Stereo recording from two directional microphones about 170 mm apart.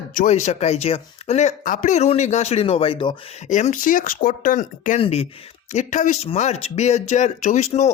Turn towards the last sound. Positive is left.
turn(degrees=40)  # may be behind; listen again after turning